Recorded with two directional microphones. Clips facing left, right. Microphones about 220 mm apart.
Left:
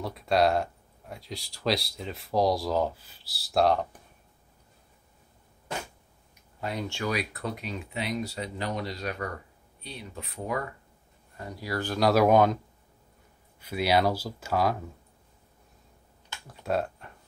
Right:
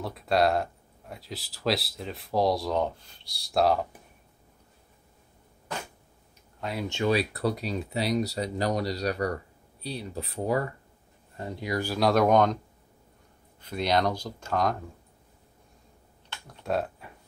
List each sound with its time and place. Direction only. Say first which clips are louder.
0.0 s speech: even; centre (ahead or behind)
6.6 s speech: even; 5° right (ahead or behind)
6.9 s speech: right 10 dB; 25° right (ahead or behind)
12.0 s speech: left 1 dB; 5° left (ahead or behind)
13.6 s speech: left 1 dB; 5° left (ahead or behind)
16.3 s computer keyboard: even; centre (ahead or behind)